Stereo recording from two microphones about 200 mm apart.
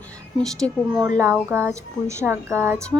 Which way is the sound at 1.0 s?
10° right (ahead or behind).